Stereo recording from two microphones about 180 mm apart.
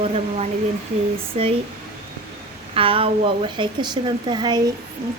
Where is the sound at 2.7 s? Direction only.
30° right (ahead or behind).